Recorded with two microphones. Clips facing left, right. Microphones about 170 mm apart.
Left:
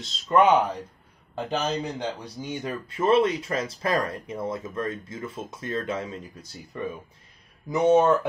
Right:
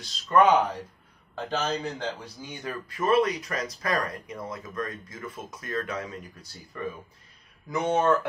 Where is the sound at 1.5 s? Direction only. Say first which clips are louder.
Left 1 dB; 15° left (ahead or behind).